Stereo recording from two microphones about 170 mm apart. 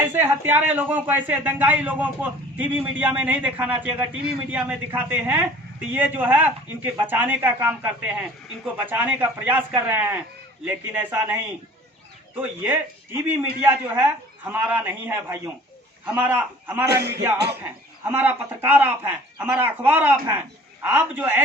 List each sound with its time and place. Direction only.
0.0 s speech: 15° right (ahead or behind)
12.4 s speech: 10° right (ahead or behind)
16.9 s speech: 75° right (ahead or behind)
17.6 s speech: 10° right (ahead or behind)